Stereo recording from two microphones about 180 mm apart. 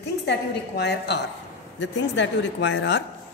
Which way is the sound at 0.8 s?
70° left (ahead or behind).